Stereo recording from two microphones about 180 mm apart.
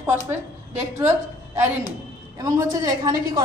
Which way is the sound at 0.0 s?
15° right (ahead or behind).